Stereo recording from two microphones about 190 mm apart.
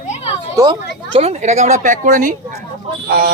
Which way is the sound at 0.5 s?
25° right (ahead or behind).